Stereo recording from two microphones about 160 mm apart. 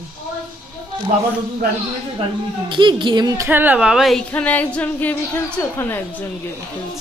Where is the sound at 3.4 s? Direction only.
10° right (ahead or behind).